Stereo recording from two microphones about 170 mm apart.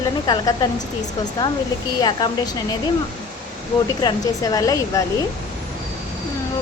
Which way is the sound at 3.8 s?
20° left (ahead or behind).